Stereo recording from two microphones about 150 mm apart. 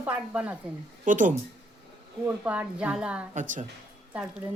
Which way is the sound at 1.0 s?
60° right (ahead or behind).